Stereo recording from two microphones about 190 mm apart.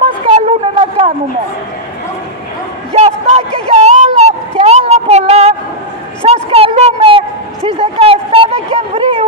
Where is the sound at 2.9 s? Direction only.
35° right (ahead or behind).